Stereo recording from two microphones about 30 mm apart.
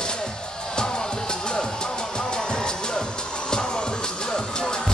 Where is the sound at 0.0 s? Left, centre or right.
Left.